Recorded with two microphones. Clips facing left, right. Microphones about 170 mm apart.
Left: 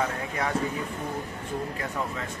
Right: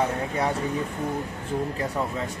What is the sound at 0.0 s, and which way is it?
Speech, 30° right (ahead or behind).